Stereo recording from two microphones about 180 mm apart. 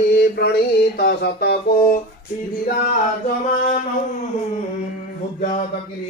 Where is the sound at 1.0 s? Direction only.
65° left (ahead or behind).